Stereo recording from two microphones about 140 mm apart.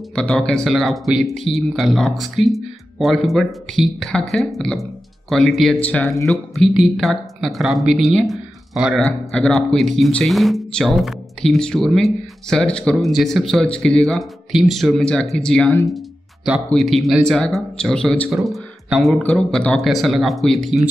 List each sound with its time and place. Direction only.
0.1 s speech: 5° left (ahead or behind)
16.7 s speech: centre (ahead or behind)